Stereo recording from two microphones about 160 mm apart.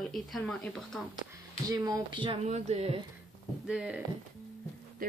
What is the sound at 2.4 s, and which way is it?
Speech, 45° right (ahead or behind).